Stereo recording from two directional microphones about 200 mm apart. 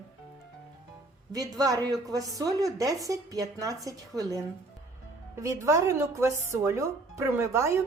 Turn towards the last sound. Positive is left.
turn(degrees=-15)  # may be behind; listen again after turning